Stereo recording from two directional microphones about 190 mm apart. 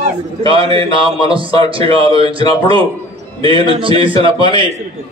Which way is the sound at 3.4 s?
30° right (ahead or behind).